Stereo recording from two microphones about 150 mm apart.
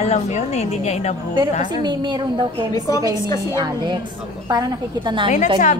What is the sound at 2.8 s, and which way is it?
Speech, 20° left (ahead or behind).